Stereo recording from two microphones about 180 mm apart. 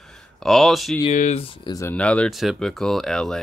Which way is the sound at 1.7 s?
10° left (ahead or behind).